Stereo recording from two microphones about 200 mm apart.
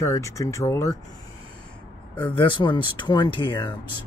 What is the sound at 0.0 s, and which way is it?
Speech, 15° left (ahead or behind).